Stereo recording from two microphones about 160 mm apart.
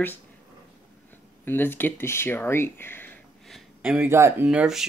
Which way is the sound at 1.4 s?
15° left (ahead or behind).